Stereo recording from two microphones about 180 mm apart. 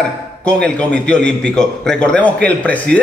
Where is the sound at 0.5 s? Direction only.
5° left (ahead or behind).